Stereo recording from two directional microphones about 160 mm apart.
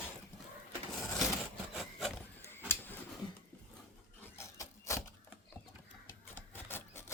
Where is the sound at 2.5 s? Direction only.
15° left (ahead or behind).